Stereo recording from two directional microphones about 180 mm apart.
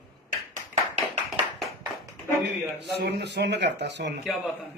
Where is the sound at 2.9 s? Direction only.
70° right (ahead or behind).